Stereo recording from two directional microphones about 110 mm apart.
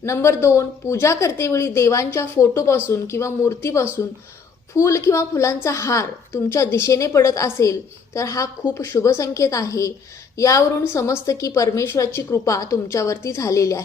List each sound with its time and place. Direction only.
0.0 s a woman's voice: 25° left (ahead or behind)